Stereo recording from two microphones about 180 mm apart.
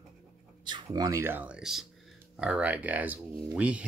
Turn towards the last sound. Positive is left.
turn(degrees=-5)  # may be behind; listen again after turning